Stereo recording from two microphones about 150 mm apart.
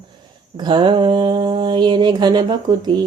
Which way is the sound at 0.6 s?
35° right (ahead or behind).